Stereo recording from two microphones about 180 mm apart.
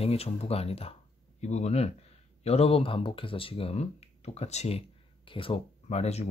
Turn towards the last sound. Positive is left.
turn(degrees=35)  # may be behind; listen again after turning